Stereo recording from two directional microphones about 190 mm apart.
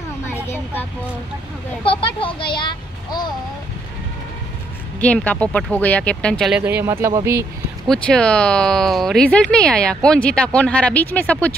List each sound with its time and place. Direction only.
1.9 s speech: 25° left (ahead or behind)
5.0 s speech: 5° left (ahead or behind)
6.6 s speech: 10° right (ahead or behind)
7.8 s speech: 5° left (ahead or behind)